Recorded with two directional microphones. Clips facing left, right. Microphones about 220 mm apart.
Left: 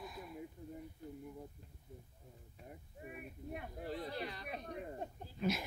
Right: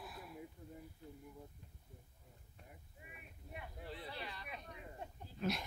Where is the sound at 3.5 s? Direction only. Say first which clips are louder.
Left 5 dB; 45° left (ahead or behind).